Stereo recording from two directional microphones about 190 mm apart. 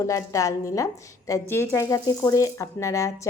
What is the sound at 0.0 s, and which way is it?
A woman's voice, 15° left (ahead or behind).